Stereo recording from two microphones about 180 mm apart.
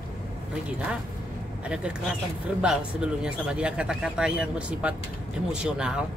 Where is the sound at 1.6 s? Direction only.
5° right (ahead or behind).